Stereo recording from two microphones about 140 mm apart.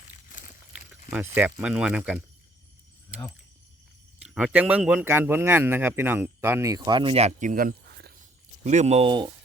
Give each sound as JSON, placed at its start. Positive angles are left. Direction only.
{"t": 1.1, "sound": "speech", "side_deg": -10}
{"t": 4.2, "sound": "speech", "side_deg": -5}
{"t": 8.6, "sound": "speech", "side_deg": -55}
{"t": 9.0, "sound": "speech", "side_deg": -35}